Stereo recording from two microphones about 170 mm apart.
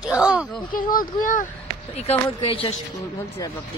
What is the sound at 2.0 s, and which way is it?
Speech, 35° left (ahead or behind).